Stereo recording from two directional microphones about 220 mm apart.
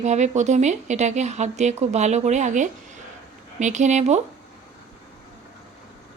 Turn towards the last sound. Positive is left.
turn(degrees=-30)  # may be behind; listen again after turning